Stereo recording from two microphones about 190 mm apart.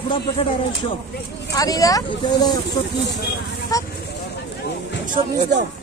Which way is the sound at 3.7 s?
20° left (ahead or behind).